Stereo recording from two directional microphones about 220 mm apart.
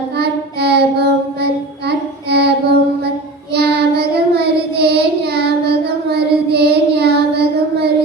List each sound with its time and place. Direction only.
0.2 s child singing: 50° right (ahead or behind)